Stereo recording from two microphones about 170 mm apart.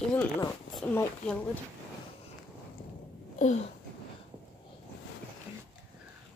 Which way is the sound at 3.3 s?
45° left (ahead or behind).